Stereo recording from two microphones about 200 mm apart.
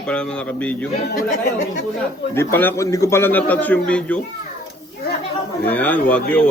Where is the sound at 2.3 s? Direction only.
10° left (ahead or behind).